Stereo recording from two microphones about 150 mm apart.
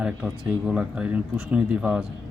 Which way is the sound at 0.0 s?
5° right (ahead or behind).